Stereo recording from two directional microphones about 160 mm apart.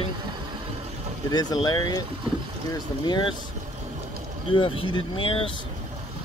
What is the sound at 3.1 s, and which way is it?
Speech, 30° left (ahead or behind).